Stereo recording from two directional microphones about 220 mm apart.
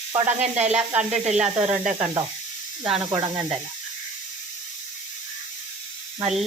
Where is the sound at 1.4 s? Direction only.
5° right (ahead or behind).